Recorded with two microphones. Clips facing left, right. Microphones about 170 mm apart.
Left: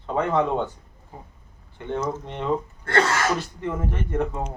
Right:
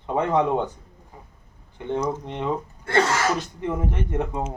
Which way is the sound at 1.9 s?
15° right (ahead or behind).